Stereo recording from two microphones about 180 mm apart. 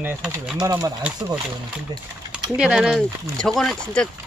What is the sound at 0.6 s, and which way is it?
Speech, 20° right (ahead or behind).